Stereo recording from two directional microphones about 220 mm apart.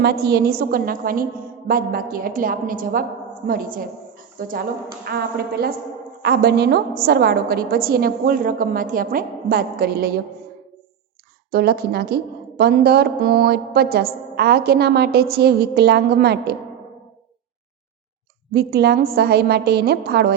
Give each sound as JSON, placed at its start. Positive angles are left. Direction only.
{"t": 0.0, "sound": "a woman's voice", "side_deg": -45}
{"t": 11.5, "sound": "a woman's voice", "side_deg": -45}
{"t": 18.5, "sound": "a woman's voice", "side_deg": -45}